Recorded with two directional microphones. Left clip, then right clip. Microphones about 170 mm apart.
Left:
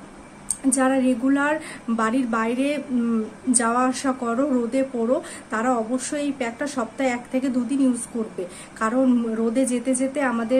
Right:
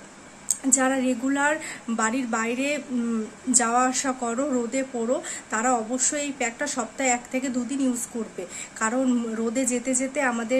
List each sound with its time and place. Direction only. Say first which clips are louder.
0.5 s speech: left 2 dB; 15° right (ahead or behind)